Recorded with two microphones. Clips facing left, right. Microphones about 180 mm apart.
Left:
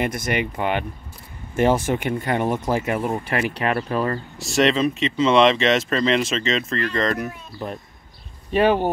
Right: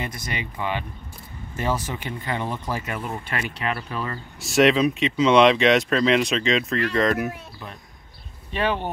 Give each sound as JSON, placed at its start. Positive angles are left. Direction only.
{"t": 0.0, "sound": "speech", "side_deg": 55}
{"t": 1.9, "sound": "speech", "side_deg": 50}
{"t": 4.4, "sound": "speech", "side_deg": 0}
{"t": 8.5, "sound": "speech", "side_deg": 45}